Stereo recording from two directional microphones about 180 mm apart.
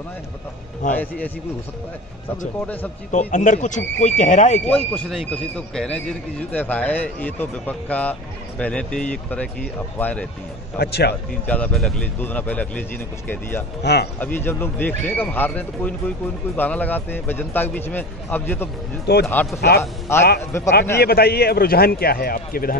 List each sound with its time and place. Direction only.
0.9 s a man's voice: 10° left (ahead or behind)
2.6 s a man's voice: 10° left (ahead or behind)
3.1 s speech: 45° left (ahead or behind)
4.6 s a man's voice: 5° left (ahead or behind)
10.8 s speech: 65° left (ahead or behind)
11.4 s a man's voice: 10° left (ahead or behind)
21.0 s speech: 60° left (ahead or behind)